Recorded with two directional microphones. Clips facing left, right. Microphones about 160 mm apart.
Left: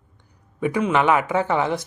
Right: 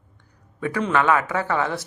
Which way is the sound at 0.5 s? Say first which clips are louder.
Left 2 dB; 15° left (ahead or behind).